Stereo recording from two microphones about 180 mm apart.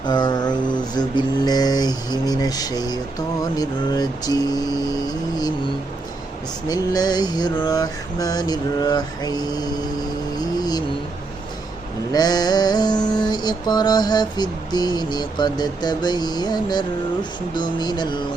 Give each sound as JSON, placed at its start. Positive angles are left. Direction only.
{"t": 0.0, "sound": "mantra", "side_deg": 25}
{"t": 6.7, "sound": "mantra", "side_deg": 20}
{"t": 10.3, "sound": "music", "side_deg": 20}
{"t": 12.1, "sound": "mantra", "side_deg": 20}